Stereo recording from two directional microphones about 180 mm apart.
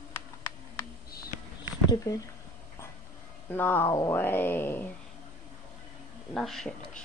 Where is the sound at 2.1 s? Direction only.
15° left (ahead or behind).